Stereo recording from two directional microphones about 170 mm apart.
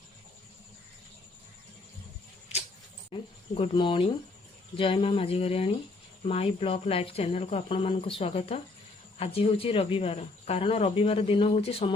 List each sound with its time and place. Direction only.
3.1 s speech: 30° left (ahead or behind)